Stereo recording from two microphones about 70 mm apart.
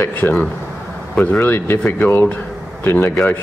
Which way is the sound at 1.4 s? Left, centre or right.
Left.